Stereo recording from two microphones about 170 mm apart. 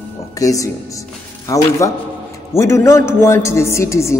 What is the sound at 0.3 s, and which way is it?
A man's voice, 20° left (ahead or behind).